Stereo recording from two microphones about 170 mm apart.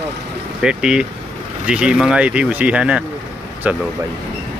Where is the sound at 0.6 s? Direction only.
5° right (ahead or behind).